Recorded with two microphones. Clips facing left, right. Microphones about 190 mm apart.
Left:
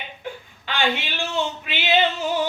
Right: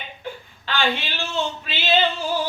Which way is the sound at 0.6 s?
15° left (ahead or behind).